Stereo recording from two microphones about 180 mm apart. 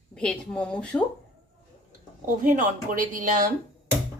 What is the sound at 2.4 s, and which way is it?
Speech, 45° right (ahead or behind).